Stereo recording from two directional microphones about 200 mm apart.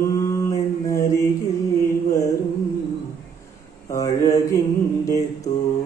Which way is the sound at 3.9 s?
15° left (ahead or behind).